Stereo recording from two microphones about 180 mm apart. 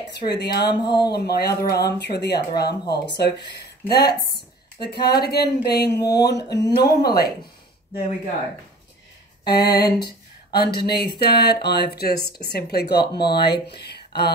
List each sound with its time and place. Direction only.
0.4 s speech: 65° left (ahead or behind)
0.8 s speech: 25° left (ahead or behind)
1.1 s speech: 60° left (ahead or behind)
9.4 s a sound: 65° left (ahead or behind)
9.9 s speech: 60° left (ahead or behind)
12.2 s speech: 30° right (ahead or behind)
12.4 s speech: 65° left (ahead or behind)
13.0 s speech: 25° left (ahead or behind)
13.3 s speech: 65° left (ahead or behind)